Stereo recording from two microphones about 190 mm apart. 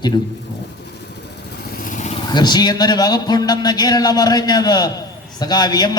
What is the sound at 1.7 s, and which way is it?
Vehicle, 45° left (ahead or behind).